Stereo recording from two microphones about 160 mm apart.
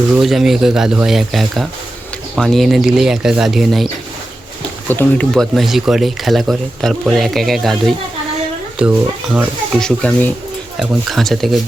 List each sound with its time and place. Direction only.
0.1 s speech: centre (ahead or behind)
4.9 s speech: 15° left (ahead or behind)
5.3 s speech: centre (ahead or behind)
9.8 s speech: 5° left (ahead or behind)